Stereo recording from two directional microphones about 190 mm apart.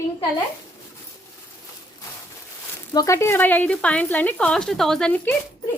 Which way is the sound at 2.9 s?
15° left (ahead or behind).